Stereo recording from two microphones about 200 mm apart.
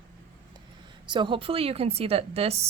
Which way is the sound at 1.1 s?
25° right (ahead or behind).